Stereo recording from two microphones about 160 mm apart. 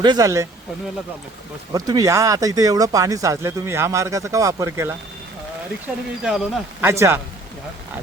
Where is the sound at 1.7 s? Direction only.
25° right (ahead or behind).